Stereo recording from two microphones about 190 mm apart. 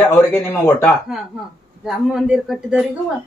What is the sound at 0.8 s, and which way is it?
A woman's voice, centre (ahead or behind).